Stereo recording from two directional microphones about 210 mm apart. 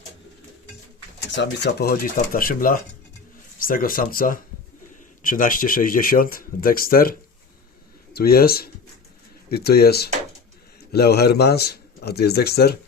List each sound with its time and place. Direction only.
1.4 s speech: 50° left (ahead or behind)